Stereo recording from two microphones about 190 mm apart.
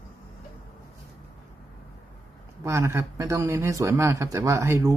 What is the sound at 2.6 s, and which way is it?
Speech, 15° right (ahead or behind).